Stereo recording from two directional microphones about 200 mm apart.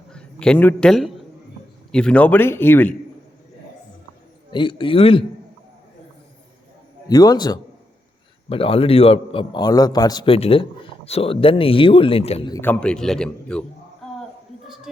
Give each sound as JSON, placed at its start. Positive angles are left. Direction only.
{"t": 0.1, "sound": "a man's voice", "side_deg": 5}
{"t": 4.5, "sound": "a man's voice", "side_deg": 25}
{"t": 7.1, "sound": "a man's voice", "side_deg": 20}
{"t": 12.5, "sound": "a man's voice", "side_deg": 10}
{"t": 14.0, "sound": "a sound", "side_deg": 0}